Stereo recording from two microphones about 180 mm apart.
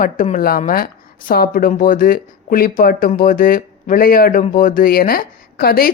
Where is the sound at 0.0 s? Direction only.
50° left (ahead or behind).